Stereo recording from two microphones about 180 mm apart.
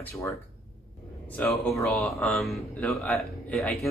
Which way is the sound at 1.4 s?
15° left (ahead or behind).